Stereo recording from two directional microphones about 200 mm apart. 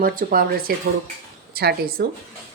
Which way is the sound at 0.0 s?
45° right (ahead or behind).